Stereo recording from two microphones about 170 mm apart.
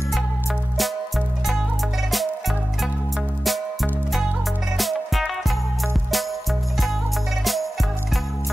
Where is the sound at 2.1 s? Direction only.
Centre (ahead or behind).